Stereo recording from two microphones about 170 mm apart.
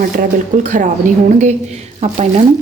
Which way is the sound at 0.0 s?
50° right (ahead or behind).